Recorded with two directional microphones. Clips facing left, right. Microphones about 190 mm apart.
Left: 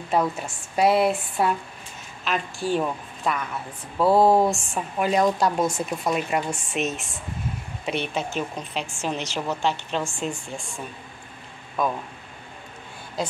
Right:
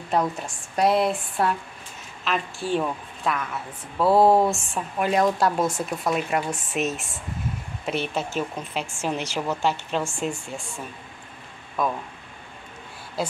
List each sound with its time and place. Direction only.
0.1 s a woman's voice: 5° left (ahead or behind)
11.8 s speech: centre (ahead or behind)
13.2 s speech: 5° right (ahead or behind)